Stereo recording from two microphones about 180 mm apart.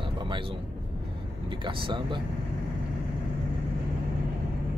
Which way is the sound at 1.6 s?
25° right (ahead or behind).